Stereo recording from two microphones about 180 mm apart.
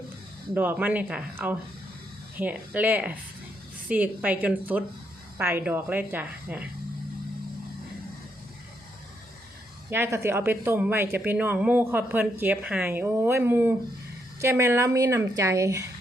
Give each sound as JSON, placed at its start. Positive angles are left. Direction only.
{"t": 0.5, "sound": "a woman's voice", "side_deg": -10}
{"t": 9.9, "sound": "a woman's voice", "side_deg": -15}